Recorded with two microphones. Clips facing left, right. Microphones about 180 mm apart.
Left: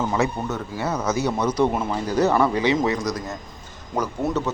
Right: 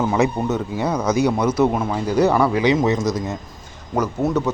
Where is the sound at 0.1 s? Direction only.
20° right (ahead or behind).